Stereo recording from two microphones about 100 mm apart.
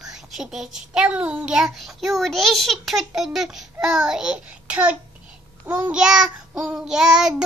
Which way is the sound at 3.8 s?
5° right (ahead or behind).